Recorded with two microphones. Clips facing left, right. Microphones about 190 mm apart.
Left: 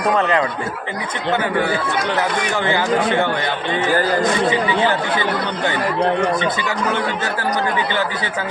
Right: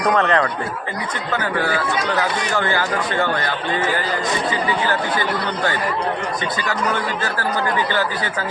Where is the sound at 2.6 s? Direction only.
20° left (ahead or behind).